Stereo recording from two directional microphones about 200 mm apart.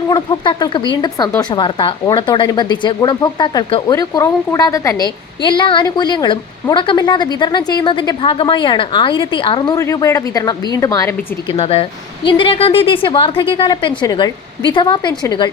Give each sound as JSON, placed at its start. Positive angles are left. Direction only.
{"t": 0.1, "sound": "speech", "side_deg": 20}
{"t": 11.5, "sound": "speech", "side_deg": 30}